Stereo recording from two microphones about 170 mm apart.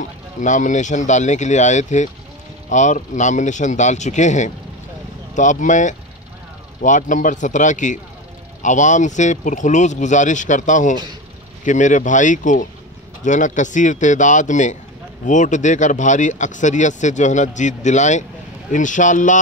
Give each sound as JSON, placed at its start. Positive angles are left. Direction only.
{"t": 0.0, "sound": "speech", "side_deg": 45}